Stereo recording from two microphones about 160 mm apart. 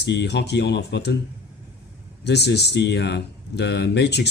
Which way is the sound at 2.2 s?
90° left.